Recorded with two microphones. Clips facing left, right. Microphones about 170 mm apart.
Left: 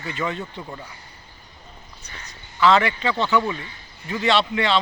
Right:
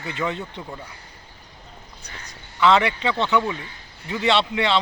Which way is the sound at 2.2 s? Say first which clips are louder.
Even; 20° right (ahead or behind).